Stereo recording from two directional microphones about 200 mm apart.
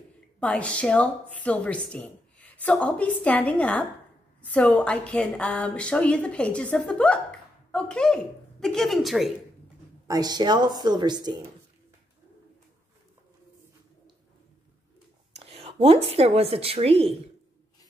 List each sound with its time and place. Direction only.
0.4 s a woman's voice: 5° left (ahead or behind)
10.0 s speech: 20° right (ahead or behind)
15.5 s speech: 30° right (ahead or behind)